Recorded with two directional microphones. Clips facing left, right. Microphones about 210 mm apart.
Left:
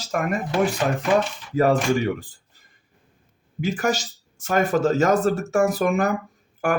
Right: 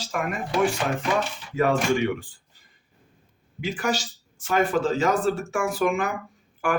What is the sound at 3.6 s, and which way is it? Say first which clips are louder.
Speech: left 3 dB; 45° left (ahead or behind).